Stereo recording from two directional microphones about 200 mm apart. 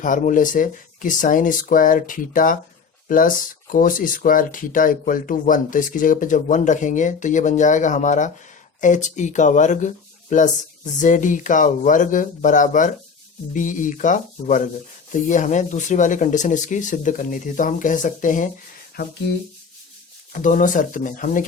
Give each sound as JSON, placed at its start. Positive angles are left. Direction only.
{"t": 0.0, "sound": "speech", "side_deg": 40}
{"t": 20.3, "sound": "speech", "side_deg": 40}